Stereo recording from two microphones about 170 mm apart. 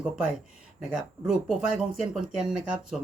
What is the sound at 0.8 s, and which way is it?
Speech, 5° right (ahead or behind).